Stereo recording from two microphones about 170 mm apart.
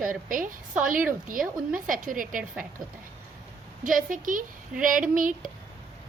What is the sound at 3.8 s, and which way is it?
A woman's voice, 55° right (ahead or behind).